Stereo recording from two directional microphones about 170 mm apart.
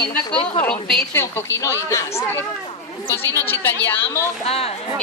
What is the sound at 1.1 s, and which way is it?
A woman's voice, 15° left (ahead or behind).